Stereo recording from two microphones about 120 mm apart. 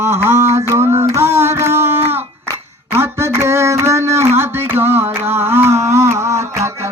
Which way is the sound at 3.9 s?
25° right (ahead or behind).